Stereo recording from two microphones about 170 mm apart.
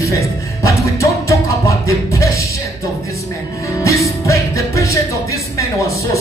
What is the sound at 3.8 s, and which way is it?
Music, 20° left (ahead or behind).